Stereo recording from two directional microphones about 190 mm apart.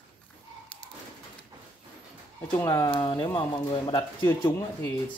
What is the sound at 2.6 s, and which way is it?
Speech, 20° left (ahead or behind).